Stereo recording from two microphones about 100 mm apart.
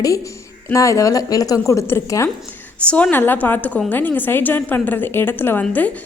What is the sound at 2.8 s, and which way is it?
A woman's voice, 15° left (ahead or behind).